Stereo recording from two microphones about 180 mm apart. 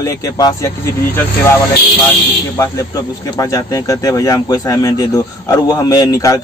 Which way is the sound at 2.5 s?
15° left (ahead or behind).